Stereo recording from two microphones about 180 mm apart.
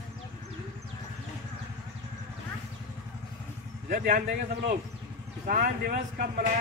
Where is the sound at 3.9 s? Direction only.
55° right (ahead or behind).